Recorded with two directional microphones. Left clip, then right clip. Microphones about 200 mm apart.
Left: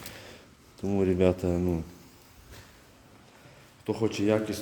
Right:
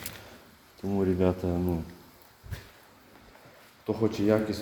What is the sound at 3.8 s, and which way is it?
Speech, 15° left (ahead or behind).